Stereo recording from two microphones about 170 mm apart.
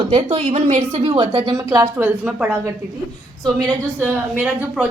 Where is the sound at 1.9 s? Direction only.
10° right (ahead or behind).